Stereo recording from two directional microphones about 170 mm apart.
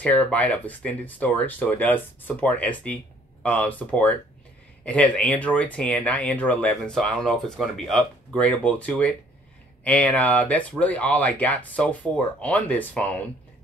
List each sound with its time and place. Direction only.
0.0 s speech: 10° left (ahead or behind)